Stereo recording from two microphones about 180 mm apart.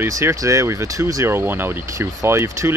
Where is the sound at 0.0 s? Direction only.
15° right (ahead or behind).